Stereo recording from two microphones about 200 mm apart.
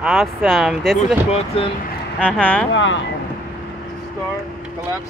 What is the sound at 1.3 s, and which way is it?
Speech, 30° left (ahead or behind).